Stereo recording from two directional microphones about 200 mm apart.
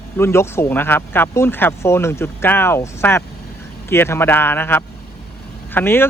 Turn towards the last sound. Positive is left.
turn(degrees=10)  # may be behind; listen again after turning